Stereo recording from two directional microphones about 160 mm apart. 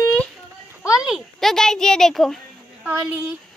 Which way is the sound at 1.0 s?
Centre (ahead or behind).